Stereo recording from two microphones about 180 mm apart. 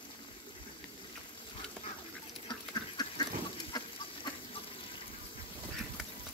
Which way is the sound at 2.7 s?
20° left (ahead or behind).